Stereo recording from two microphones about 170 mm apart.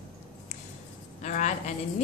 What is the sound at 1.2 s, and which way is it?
Speech, 45° left (ahead or behind).